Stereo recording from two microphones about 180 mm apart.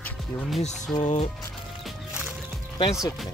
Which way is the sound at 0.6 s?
40° left (ahead or behind).